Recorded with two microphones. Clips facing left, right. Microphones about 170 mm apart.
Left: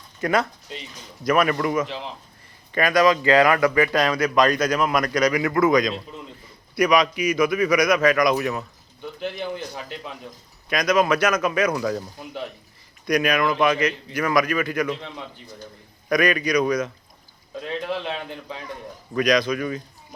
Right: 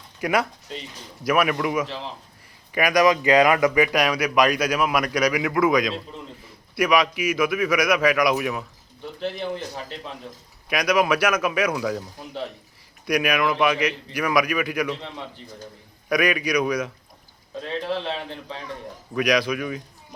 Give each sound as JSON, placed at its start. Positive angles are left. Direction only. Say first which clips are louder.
{"t": 0.2, "sound": "a man's voice", "louder": "left 1 dB", "side_deg": -10}
{"t": 9.9, "sound": "a man's voice", "louder": "left 1 dB", "side_deg": -30}
{"t": 10.7, "sound": "speech", "louder": "left 1 dB", "side_deg": -10}
{"t": 13.1, "sound": "speech", "louder": "left 1 dB", "side_deg": -10}
{"t": 16.0, "sound": "speech", "louder": "left 1 dB", "side_deg": -10}
{"t": 17.8, "sound": "a man's voice", "louder": "right 1 dB", "side_deg": -30}
{"t": 19.1, "sound": "speech", "louder": "left 1 dB", "side_deg": -10}